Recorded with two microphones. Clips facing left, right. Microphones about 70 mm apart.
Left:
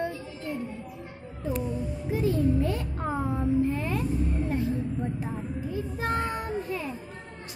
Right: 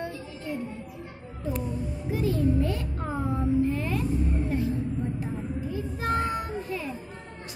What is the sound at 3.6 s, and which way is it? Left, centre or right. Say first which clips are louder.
Music: even; left.